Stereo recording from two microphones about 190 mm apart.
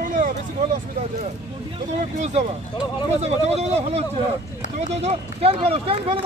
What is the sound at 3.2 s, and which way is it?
Speech, 35° right (ahead or behind).